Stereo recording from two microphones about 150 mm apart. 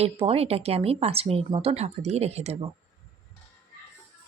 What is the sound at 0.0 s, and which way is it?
Speech, 40° right (ahead or behind).